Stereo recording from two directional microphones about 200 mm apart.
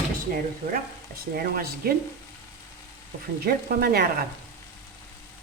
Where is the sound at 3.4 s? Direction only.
50° right (ahead or behind).